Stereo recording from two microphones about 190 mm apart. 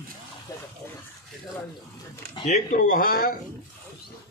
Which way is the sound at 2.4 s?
40° left (ahead or behind).